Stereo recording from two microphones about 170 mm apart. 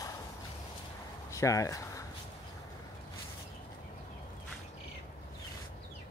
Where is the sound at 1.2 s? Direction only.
20° left (ahead or behind).